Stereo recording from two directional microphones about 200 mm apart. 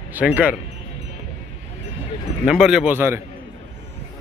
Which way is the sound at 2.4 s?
Centre (ahead or behind).